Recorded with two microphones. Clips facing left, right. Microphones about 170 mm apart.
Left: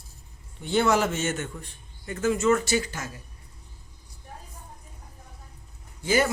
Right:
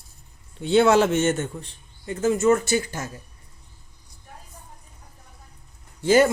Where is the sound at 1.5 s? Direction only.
25° right (ahead or behind).